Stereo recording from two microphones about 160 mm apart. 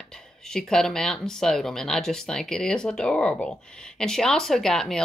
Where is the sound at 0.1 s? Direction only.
5° left (ahead or behind).